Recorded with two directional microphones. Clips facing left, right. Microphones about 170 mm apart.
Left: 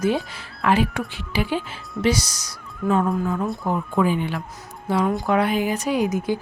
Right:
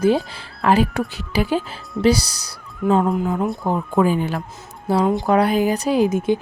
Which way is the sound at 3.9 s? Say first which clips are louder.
Right 4 dB; 40° right (ahead or behind).